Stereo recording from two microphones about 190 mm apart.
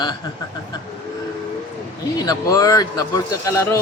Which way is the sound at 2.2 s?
20° left (ahead or behind).